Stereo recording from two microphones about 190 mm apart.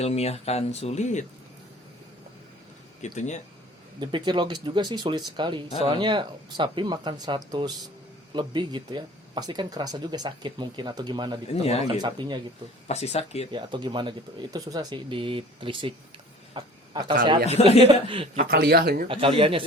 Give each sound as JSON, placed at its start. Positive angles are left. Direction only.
{"t": 0.0, "sound": "speech", "side_deg": 35}
{"t": 3.0, "sound": "speech", "side_deg": 40}
{"t": 4.0, "sound": "speech", "side_deg": -25}
{"t": 11.4, "sound": "speech", "side_deg": 35}
{"t": 11.9, "sound": "speech", "side_deg": -25}
{"t": 12.9, "sound": "speech", "side_deg": 35}
{"t": 13.5, "sound": "speech", "side_deg": -25}
{"t": 17.6, "sound": "speech", "side_deg": 30}
{"t": 17.8, "sound": "speech", "side_deg": -25}
{"t": 18.3, "sound": "speech", "side_deg": -55}
{"t": 19.0, "sound": "speech", "side_deg": -30}